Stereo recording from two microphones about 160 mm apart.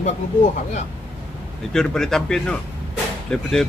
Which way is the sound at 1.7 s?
5° left (ahead or behind).